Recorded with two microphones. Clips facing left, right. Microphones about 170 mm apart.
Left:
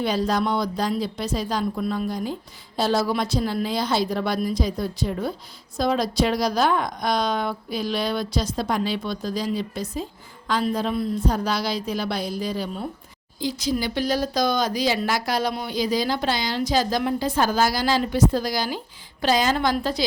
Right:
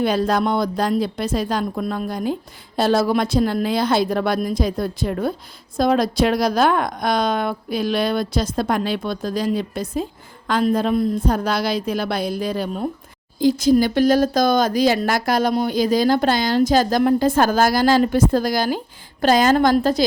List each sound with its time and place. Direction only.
0.0 s a woman's voice: 55° right (ahead or behind)